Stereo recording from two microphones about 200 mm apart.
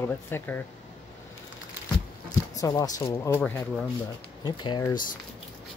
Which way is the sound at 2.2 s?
15° left (ahead or behind).